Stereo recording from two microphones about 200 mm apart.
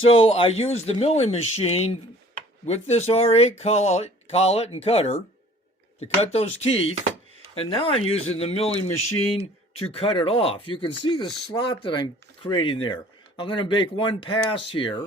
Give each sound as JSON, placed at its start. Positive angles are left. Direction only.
{"t": 0.0, "sound": "speech", "side_deg": 30}